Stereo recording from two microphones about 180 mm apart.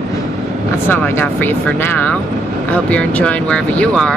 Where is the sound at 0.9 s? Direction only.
10° left (ahead or behind).